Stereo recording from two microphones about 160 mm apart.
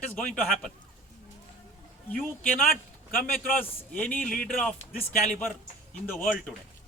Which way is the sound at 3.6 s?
10° left (ahead or behind).